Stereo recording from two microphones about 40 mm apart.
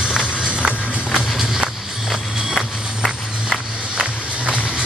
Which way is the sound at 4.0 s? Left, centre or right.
Right.